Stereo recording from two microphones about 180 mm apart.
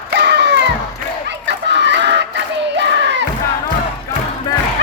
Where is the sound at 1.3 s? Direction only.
75° right (ahead or behind).